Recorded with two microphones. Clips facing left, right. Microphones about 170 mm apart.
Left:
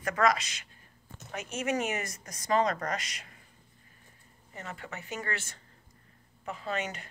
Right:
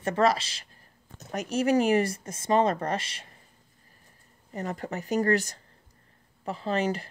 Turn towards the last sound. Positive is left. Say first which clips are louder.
# right 7 dB
turn(degrees=-35)  # may be behind; listen again after turning